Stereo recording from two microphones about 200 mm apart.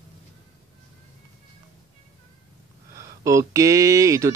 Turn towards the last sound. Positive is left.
turn(degrees=-15)  # may be behind; listen again after turning